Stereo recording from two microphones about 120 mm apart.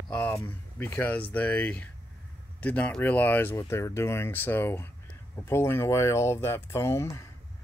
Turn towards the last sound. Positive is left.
turn(degrees=25)  # may be behind; listen again after turning